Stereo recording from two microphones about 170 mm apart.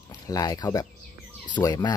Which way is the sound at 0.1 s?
20° left (ahead or behind).